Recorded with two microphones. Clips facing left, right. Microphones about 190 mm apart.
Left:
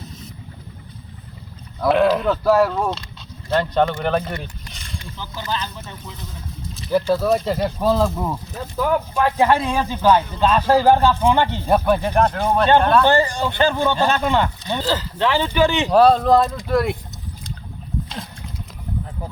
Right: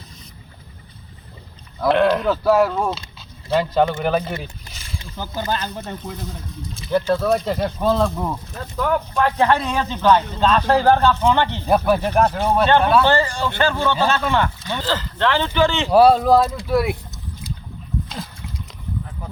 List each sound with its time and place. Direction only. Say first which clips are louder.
1.8 s speech: even; centre (ahead or behind)
4.7 s a sound: even; 5° right (ahead or behind)
5.1 s speech: right 3 dB; 45° right (ahead or behind)
6.7 s speech: left 1 dB; centre (ahead or behind)
11.6 s speech: even; 5° right (ahead or behind)
13.1 s speech: left 1 dB; 15° left (ahead or behind)
15.9 s speech: right 2 dB; 10° right (ahead or behind)